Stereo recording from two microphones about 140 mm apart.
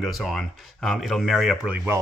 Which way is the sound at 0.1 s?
Centre (ahead or behind).